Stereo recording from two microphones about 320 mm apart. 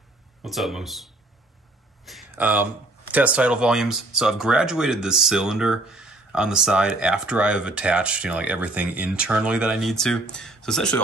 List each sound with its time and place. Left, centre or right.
0.4 s speech: centre